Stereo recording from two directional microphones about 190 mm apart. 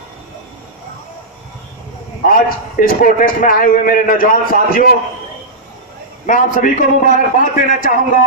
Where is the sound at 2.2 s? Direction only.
45° left (ahead or behind).